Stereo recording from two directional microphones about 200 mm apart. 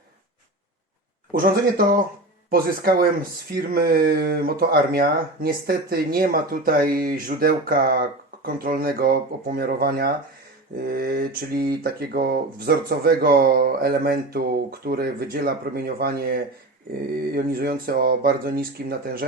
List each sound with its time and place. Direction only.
1.3 s speech: 45° right (ahead or behind)